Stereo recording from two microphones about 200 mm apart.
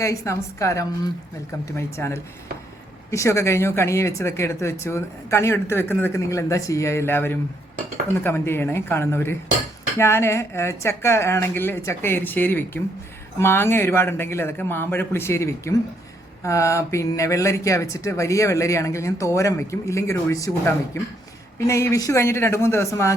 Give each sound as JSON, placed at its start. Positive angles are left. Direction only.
{"t": 0.0, "sound": "speech", "side_deg": 15}